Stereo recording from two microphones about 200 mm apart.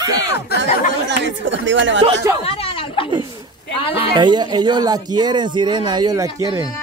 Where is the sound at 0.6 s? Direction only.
60° right (ahead or behind).